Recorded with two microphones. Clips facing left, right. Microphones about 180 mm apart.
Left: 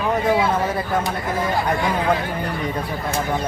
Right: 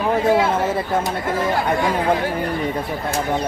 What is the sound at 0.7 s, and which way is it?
Speech, 25° right (ahead or behind).